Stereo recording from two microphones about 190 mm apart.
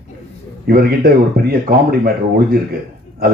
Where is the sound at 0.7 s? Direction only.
55° right (ahead or behind).